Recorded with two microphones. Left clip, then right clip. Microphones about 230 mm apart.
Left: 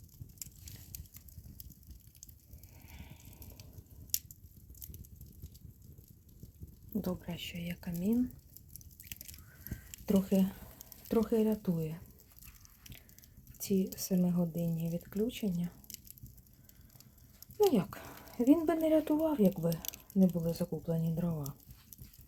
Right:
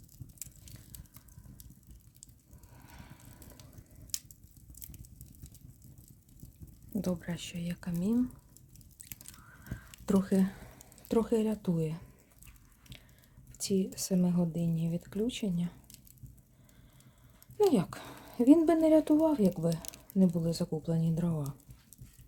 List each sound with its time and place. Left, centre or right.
2.8 s vehicle: centre
7.0 s speech: centre
9.3 s a sound: centre
13.6 s speech: centre
17.6 s speech: centre
19.7 s squish: right
20.1 s speech: centre